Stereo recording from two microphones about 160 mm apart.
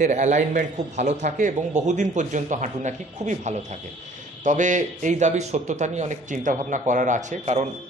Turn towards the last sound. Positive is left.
turn(degrees=-45)  # may be behind; listen again after turning